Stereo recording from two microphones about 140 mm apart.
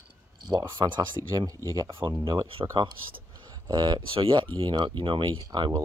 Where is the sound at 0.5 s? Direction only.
30° right (ahead or behind).